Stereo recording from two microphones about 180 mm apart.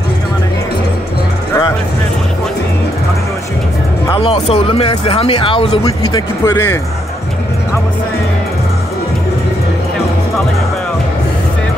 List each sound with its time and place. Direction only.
4.1 s speech: 30° left (ahead or behind)
5.9 s speech: 15° left (ahead or behind)